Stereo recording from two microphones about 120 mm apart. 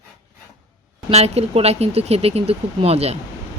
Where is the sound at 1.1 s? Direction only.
60° right (ahead or behind).